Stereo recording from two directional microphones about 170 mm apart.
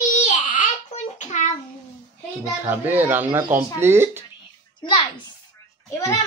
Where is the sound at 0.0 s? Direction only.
45° left (ahead or behind).